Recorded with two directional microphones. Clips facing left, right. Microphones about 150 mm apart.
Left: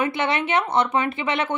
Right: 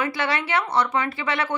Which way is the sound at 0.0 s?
20° left (ahead or behind).